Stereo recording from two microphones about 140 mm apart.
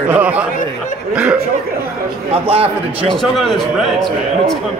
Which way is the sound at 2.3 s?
45° right (ahead or behind).